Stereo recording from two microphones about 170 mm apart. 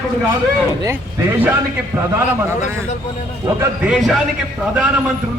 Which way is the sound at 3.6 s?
5° right (ahead or behind).